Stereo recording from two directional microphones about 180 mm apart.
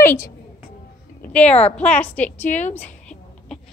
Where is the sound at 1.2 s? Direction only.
10° left (ahead or behind).